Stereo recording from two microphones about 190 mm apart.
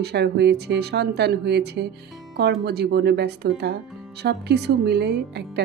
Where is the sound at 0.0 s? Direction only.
60° right (ahead or behind).